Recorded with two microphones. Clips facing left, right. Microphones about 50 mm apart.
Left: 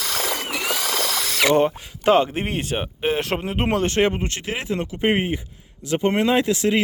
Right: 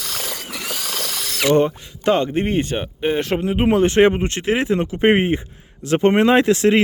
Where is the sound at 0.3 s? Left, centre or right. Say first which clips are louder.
Left 4 dB; left.